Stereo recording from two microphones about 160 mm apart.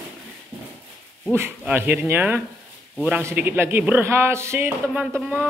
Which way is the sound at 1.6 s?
10° right (ahead or behind).